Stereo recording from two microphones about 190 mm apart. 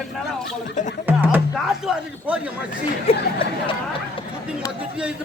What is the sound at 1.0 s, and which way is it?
A man's voice, 10° right (ahead or behind).